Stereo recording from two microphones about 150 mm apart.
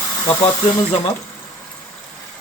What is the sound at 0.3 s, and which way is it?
Speech, 35° left (ahead or behind).